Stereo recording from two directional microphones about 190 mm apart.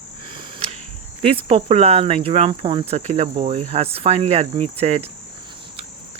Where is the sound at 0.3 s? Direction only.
30° right (ahead or behind).